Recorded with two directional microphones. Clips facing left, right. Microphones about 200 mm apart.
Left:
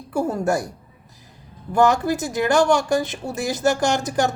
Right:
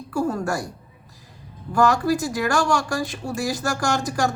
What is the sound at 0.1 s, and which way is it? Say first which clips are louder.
Speech: left 3 dB; 20° left (ahead or behind).